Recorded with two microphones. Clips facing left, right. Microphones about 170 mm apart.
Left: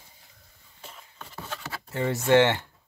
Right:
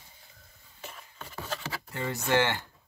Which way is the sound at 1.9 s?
25° left (ahead or behind).